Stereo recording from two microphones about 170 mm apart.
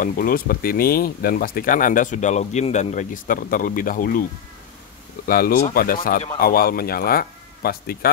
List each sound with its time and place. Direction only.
0.0 s speech: 55° left (ahead or behind)
5.2 s speech: 55° left (ahead or behind)